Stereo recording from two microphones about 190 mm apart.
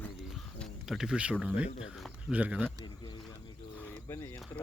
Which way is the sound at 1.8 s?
Centre (ahead or behind).